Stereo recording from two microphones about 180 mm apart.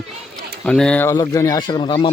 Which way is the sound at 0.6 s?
5° left (ahead or behind).